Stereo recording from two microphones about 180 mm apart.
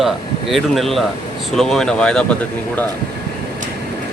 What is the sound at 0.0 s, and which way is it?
Speech, centre (ahead or behind).